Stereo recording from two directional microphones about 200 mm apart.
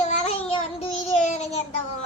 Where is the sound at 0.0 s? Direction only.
30° left (ahead or behind).